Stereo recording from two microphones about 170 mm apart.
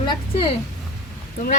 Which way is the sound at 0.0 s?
25° left (ahead or behind).